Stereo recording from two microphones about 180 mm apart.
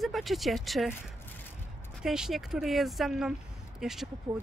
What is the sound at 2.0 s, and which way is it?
Speech, 5° right (ahead or behind).